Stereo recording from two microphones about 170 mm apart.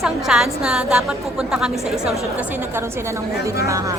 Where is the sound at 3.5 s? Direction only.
20° right (ahead or behind).